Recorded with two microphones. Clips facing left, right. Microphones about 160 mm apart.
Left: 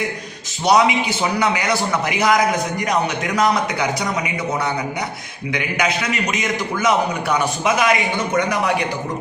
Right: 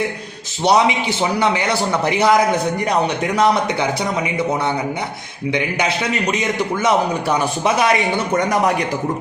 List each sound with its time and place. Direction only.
0.6 s a man's voice: 25° right (ahead or behind)
5.5 s a man's voice: 30° right (ahead or behind)